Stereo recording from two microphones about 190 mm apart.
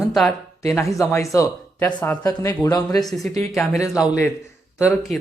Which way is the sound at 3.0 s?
Centre (ahead or behind).